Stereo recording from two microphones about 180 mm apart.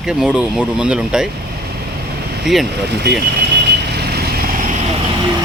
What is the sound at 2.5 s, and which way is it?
Speech, centre (ahead or behind).